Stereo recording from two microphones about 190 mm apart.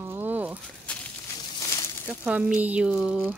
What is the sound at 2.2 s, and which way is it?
Speech, 5° right (ahead or behind).